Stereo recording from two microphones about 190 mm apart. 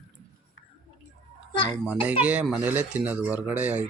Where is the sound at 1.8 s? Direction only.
10° right (ahead or behind).